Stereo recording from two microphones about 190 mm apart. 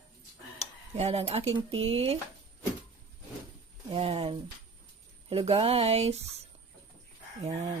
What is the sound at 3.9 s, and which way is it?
Speech, 30° right (ahead or behind).